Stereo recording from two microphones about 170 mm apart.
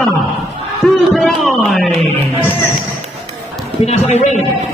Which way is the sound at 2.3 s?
10° left (ahead or behind).